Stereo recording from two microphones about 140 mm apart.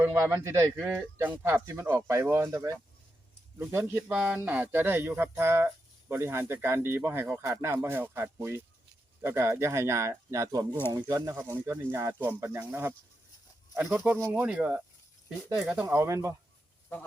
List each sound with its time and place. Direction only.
0.0 s a man's voice: 20° right (ahead or behind)